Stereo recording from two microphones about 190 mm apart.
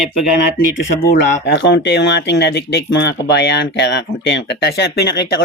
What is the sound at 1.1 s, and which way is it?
Speech, 55° left (ahead or behind).